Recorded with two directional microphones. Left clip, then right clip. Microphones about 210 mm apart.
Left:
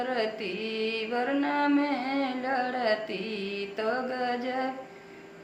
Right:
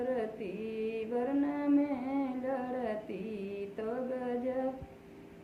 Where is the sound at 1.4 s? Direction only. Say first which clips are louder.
Left 5 dB; 15° left (ahead or behind).